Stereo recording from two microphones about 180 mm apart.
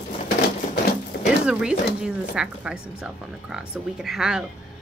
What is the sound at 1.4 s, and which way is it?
A woman's voice, 5° right (ahead or behind).